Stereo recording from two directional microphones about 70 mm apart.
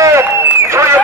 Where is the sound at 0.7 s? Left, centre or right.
Right.